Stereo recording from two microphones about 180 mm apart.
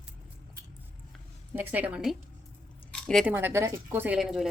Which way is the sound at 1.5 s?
10° right (ahead or behind).